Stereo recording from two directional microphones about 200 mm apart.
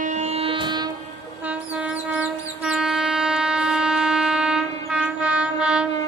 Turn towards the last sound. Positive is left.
turn(degrees=-5)  # may be behind; listen again after turning